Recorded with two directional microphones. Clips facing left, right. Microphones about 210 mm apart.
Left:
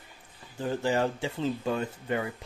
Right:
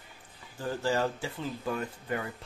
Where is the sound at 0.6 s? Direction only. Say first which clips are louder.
Left 2 dB; 20° left (ahead or behind).